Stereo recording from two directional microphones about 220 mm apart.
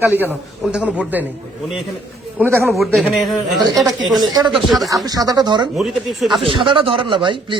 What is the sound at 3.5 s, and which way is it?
A man's voice, 15° right (ahead or behind).